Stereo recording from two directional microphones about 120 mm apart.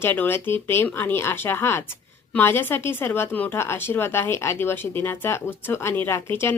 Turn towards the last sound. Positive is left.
turn(degrees=20)  # may be behind; listen again after turning